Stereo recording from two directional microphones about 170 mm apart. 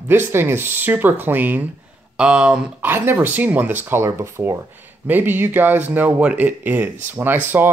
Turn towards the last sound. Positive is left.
turn(degrees=-10)  # may be behind; listen again after turning